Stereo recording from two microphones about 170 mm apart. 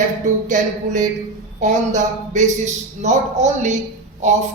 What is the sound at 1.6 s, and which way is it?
Speech, 45° right (ahead or behind).